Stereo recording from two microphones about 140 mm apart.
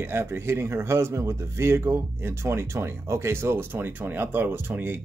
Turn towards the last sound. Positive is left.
turn(degrees=-15)  # may be behind; listen again after turning